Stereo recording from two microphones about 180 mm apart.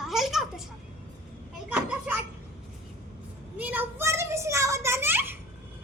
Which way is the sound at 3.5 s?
10° right (ahead or behind).